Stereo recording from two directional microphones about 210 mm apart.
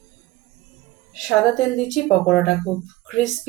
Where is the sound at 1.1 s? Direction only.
Centre (ahead or behind).